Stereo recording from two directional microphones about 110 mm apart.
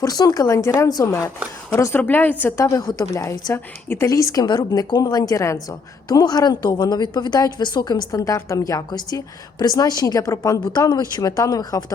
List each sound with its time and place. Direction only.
0.0 s a woman's voice: 35° left (ahead or behind)
2.0 s a woman's voice: 15° left (ahead or behind); by 11.8 s 35° left (ahead or behind)